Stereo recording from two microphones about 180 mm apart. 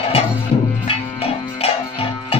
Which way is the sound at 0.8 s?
35° left (ahead or behind).